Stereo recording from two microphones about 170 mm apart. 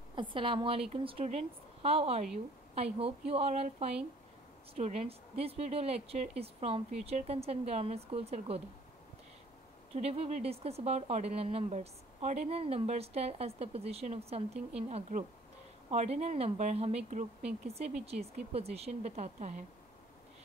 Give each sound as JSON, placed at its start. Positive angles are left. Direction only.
{"t": 0.1, "sound": "speech", "side_deg": -30}
{"t": 9.9, "sound": "speech", "side_deg": -40}